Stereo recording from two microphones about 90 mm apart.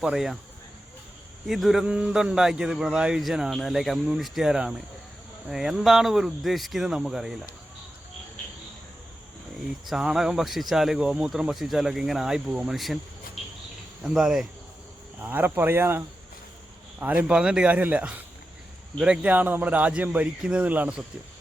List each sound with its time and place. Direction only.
0.0 s speech: 5° right (ahead or behind)
1.5 s speech: centre (ahead or behind)
1.8 s a man's voice: 10° right (ahead or behind)
9.8 s speech: 5° right (ahead or behind)
14.1 s speech: 5° right (ahead or behind)
15.2 s a man's voice: 20° right (ahead or behind)